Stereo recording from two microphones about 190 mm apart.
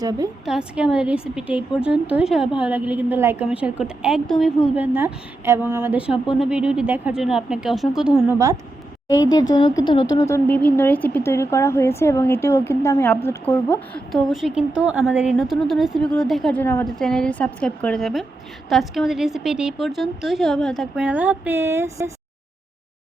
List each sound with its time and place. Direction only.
0.0 s a woman's voice: 20° right (ahead or behind)
0.4 s a woman's voice: 5° right (ahead or behind)
9.1 s a woman's voice: 20° left (ahead or behind); by 22.1 s 15° right (ahead or behind)